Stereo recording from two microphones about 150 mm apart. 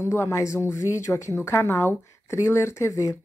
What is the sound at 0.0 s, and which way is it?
A woman's voice, 15° left (ahead or behind).